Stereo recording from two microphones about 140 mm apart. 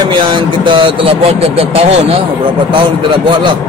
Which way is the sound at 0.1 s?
35° right (ahead or behind).